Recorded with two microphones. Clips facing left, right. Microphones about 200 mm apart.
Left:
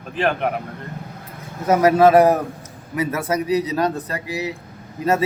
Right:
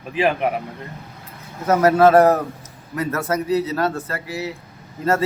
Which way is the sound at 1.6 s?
10° left (ahead or behind).